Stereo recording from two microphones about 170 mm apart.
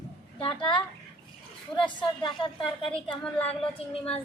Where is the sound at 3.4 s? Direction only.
10° left (ahead or behind).